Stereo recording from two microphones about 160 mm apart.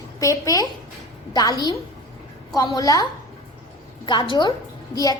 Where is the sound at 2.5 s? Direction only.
20° left (ahead or behind).